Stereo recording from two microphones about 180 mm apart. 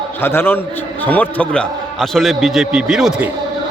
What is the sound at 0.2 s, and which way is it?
A man's voice, 10° left (ahead or behind).